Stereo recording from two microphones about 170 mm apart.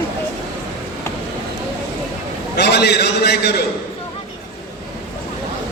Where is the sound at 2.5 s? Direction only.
75° left (ahead or behind).